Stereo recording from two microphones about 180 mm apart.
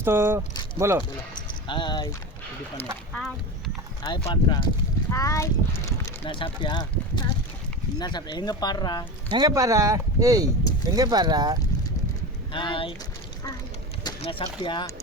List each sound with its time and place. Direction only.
0.0 s speech: 15° right (ahead or behind)
1.4 s a sound: 25° left (ahead or behind)
3.1 s speech: 5° left (ahead or behind)
4.0 s speech: 25° left (ahead or behind)
9.3 s speech: 20° right (ahead or behind)
12.5 s speech: 30° left (ahead or behind)
14.2 s speech: 30° left (ahead or behind)